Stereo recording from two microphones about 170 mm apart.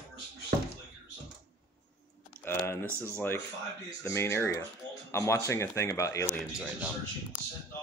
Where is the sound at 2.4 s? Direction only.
15° left (ahead or behind).